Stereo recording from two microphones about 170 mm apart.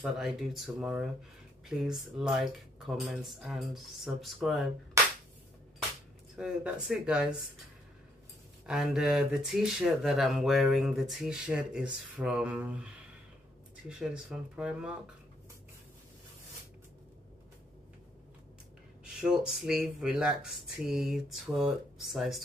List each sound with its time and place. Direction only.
0.0 s speech: centre (ahead or behind)
6.3 s speech: 5° right (ahead or behind)
8.6 s speech: 5° right (ahead or behind)
19.2 s speech: 5° right (ahead or behind)